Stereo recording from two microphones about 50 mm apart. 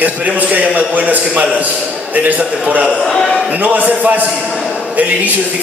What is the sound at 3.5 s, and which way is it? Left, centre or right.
A man's voice, right.